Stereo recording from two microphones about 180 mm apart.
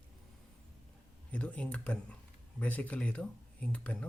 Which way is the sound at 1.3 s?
5° left (ahead or behind).